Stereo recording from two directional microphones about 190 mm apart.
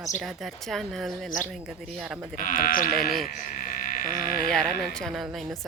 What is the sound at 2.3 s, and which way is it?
Speech, 45° left (ahead or behind).